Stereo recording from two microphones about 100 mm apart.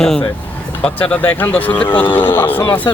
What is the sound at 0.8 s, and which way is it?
Speech, 10° left (ahead or behind).